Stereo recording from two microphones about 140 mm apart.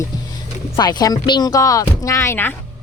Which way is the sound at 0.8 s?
30° left (ahead or behind).